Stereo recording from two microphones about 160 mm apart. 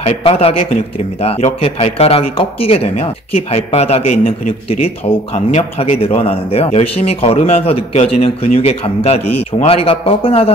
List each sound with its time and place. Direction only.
0.0 s a man's voice: 35° left (ahead or behind)